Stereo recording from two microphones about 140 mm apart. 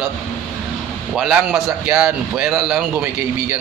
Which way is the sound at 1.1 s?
5° right (ahead or behind).